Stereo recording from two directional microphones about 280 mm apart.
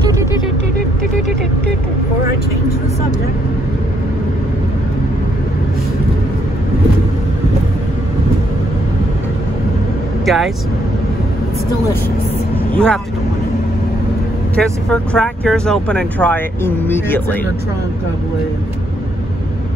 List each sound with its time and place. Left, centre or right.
10.2 s speech: centre
12.7 s speech: centre
14.5 s speech: centre